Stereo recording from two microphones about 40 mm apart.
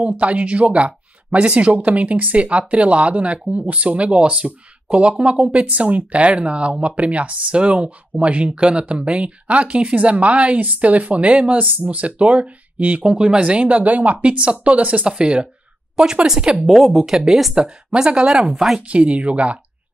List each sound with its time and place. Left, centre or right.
0.0 s speech: right
5.7 s speech: right
14.2 s speech: right
15.0 s speech: right
16.6 s a woman's voice: centre
17.6 s speech: centre